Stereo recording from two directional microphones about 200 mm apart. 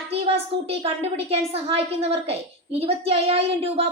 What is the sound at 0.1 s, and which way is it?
A woman's voice, 30° right (ahead or behind).